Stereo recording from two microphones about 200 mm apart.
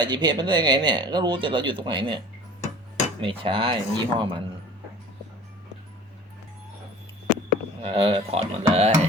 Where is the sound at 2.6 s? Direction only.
35° left (ahead or behind).